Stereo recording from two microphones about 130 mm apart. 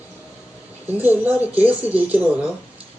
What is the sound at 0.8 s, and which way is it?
A man's voice, 15° right (ahead or behind).